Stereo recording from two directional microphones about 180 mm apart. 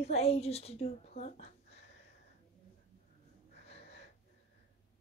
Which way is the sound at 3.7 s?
35° left (ahead or behind).